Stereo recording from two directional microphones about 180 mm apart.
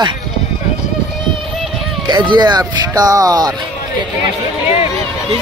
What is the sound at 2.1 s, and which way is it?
Speech, 25° right (ahead or behind).